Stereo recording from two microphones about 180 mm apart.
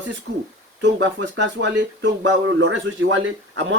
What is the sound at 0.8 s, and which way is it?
Speech, 90° right.